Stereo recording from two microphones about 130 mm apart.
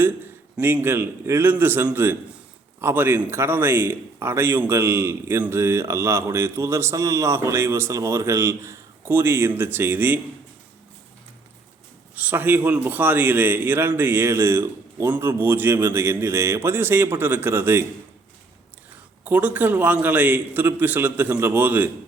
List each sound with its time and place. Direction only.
0.5 s a man's voice: 15° right (ahead or behind)
12.1 s a man's voice: 15° right (ahead or behind)
19.2 s a man's voice: 10° right (ahead or behind)